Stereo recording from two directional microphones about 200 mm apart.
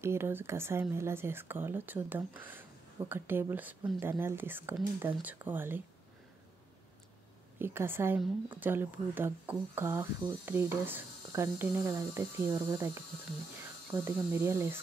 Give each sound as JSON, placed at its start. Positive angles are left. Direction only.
{"t": 0.0, "sound": "speech", "side_deg": -10}
{"t": 7.5, "sound": "speech", "side_deg": -10}
{"t": 14.0, "sound": "speech", "side_deg": -15}